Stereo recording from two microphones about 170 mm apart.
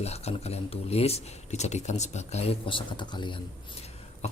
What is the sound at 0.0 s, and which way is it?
A man's voice, 40° left (ahead or behind).